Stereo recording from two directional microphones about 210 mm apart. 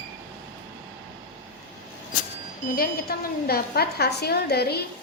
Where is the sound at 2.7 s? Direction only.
45° left (ahead or behind).